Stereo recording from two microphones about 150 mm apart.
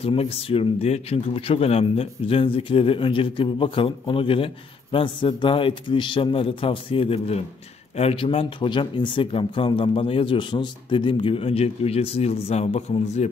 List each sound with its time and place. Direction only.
0.0 s speech: 40° left (ahead or behind)